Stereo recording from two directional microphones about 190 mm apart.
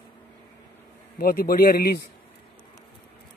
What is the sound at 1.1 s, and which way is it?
Speech, 55° left (ahead or behind).